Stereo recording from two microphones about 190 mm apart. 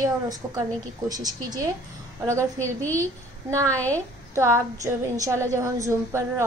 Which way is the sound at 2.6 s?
10° left (ahead or behind).